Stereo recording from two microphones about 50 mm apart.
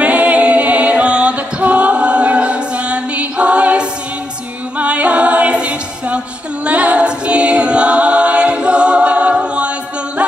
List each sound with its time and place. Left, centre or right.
0.0 s music: right
4.7 s a capella: right